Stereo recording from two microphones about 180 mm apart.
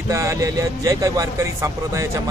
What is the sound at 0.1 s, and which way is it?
A man's voice, 15° right (ahead or behind).